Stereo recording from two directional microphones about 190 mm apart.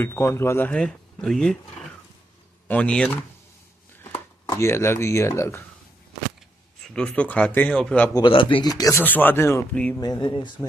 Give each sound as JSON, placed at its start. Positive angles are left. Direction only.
{"t": 0.0, "sound": "speech", "side_deg": 15}
{"t": 4.5, "sound": "speech", "side_deg": 15}
{"t": 6.9, "sound": "speech", "side_deg": 5}
{"t": 8.1, "sound": "speech", "side_deg": 25}
{"t": 9.9, "sound": "speech", "side_deg": 20}